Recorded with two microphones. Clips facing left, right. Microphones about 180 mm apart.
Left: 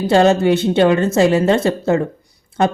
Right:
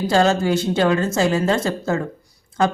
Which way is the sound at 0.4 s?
60° left (ahead or behind).